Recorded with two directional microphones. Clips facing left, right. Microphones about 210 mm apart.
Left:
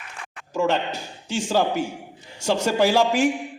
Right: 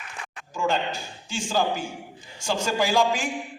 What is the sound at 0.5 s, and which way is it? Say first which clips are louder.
A man's voice: left 3 dB; 65° left (ahead or behind).